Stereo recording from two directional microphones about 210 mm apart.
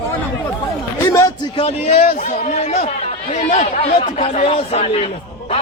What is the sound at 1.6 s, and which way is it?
A man's voice, 30° left (ahead or behind).